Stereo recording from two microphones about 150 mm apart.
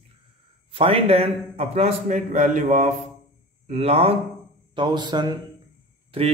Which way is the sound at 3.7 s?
45° right (ahead or behind).